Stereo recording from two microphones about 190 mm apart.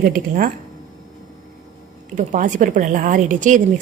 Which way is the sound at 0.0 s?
45° right (ahead or behind).